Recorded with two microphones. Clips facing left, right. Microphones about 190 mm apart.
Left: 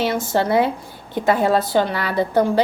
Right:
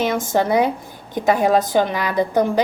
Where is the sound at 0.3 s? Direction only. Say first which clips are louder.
Right 1 dB; 15° right (ahead or behind).